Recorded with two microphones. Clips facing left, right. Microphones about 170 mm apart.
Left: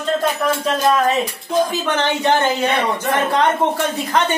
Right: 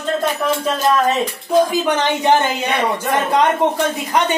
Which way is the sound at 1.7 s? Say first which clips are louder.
Right 2 dB; 15° right (ahead or behind).